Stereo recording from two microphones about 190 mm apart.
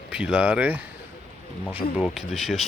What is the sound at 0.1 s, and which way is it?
Speech, 5° right (ahead or behind).